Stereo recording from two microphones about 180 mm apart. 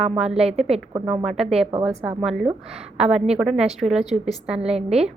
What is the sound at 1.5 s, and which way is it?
Speech, 35° right (ahead or behind).